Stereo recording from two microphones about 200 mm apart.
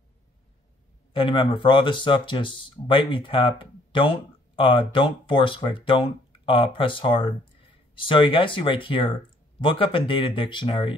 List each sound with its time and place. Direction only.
1.1 s speech: 25° left (ahead or behind)